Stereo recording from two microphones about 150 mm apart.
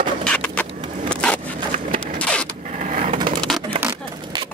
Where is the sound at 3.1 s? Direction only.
35° right (ahead or behind).